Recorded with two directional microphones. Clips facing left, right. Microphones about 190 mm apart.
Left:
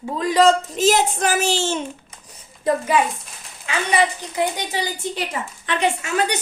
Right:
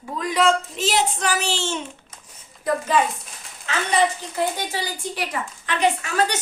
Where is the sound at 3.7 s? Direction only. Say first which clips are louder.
Left 1 dB; 15° left (ahead or behind).